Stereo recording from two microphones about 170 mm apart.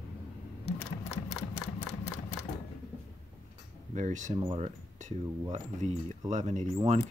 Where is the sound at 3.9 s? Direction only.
45° right (ahead or behind).